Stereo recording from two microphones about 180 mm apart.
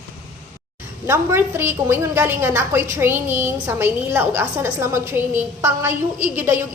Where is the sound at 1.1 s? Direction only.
15° right (ahead or behind).